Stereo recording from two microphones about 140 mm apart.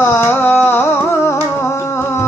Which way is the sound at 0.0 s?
15° left (ahead or behind).